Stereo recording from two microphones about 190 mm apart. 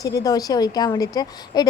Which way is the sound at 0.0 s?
20° left (ahead or behind).